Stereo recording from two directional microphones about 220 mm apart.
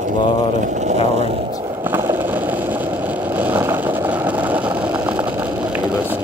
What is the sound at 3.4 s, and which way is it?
Vehicle, 10° right (ahead or behind).